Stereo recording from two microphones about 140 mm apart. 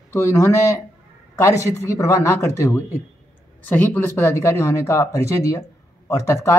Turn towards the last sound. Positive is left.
turn(degrees=20)  # may be behind; listen again after turning